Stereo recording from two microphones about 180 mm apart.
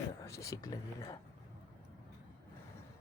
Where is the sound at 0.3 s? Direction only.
20° left (ahead or behind).